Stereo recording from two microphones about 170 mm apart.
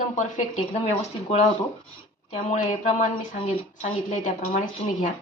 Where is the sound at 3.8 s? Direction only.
45° left (ahead or behind).